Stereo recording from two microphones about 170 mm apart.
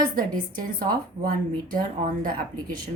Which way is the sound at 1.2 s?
55° right (ahead or behind).